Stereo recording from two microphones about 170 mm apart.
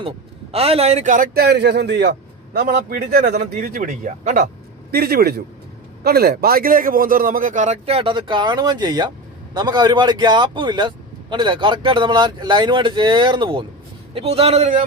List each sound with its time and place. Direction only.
0.5 s speech: 35° right (ahead or behind)
1.3 s a man's voice: 70° right (ahead or behind); by 4.4 s 50° right (ahead or behind)
4.9 s a man's voice: 65° right (ahead or behind); by 14.8 s 45° right (ahead or behind)